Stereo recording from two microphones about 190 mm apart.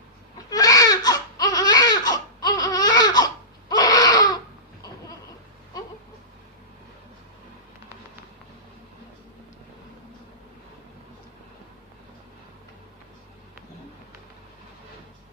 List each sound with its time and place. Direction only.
0.5 s baby cry: 20° left (ahead or behind)